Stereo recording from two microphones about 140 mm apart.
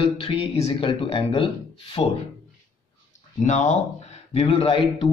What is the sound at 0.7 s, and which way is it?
Speech, 40° left (ahead or behind).